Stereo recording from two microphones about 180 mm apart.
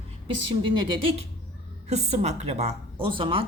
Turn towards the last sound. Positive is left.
turn(degrees=-30)  # may be behind; listen again after turning